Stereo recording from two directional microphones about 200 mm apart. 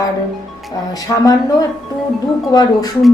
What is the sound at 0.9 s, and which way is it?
A woman's voice, 20° left (ahead or behind).